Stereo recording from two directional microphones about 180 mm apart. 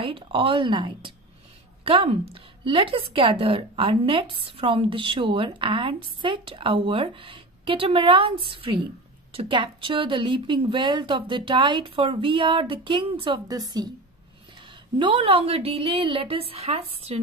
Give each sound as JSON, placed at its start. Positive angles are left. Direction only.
{"t": 0.0, "sound": "a woman's voice", "side_deg": -30}
{"t": 15.0, "sound": "a woman's voice", "side_deg": -30}